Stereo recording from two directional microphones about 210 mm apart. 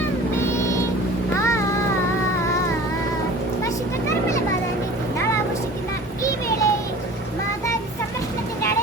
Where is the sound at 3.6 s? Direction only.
15° left (ahead or behind).